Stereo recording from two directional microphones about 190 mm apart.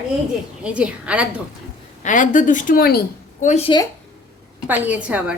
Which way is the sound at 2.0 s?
40° left (ahead or behind).